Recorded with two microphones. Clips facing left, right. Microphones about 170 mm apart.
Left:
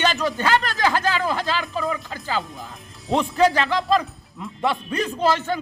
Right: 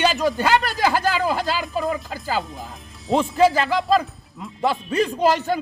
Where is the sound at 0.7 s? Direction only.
10° right (ahead or behind).